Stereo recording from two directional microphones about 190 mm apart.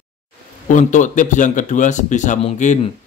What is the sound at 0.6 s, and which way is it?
Speech, 40° left (ahead or behind).